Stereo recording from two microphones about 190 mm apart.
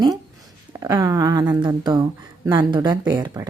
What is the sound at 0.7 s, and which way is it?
A woman's voice, 20° right (ahead or behind).